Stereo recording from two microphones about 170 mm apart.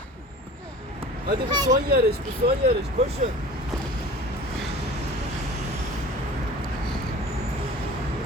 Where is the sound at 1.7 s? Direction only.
65° right (ahead or behind).